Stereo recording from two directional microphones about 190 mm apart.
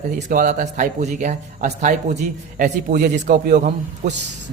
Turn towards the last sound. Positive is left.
turn(degrees=-40)  # may be behind; listen again after turning